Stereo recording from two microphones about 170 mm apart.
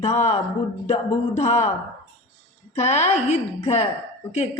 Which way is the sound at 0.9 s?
40° left (ahead or behind).